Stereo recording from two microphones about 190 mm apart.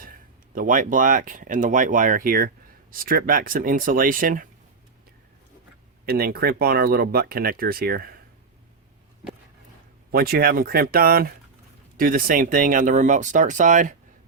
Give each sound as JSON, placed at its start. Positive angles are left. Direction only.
{"t": 0.0, "sound": "speech", "side_deg": -45}
{"t": 6.1, "sound": "speech", "side_deg": -55}
{"t": 10.1, "sound": "speech", "side_deg": -50}